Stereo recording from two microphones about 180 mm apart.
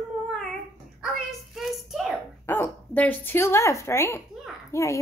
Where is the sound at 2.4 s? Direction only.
10° left (ahead or behind).